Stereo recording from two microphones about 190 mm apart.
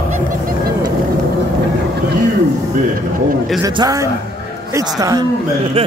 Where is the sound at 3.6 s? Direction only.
20° right (ahead or behind).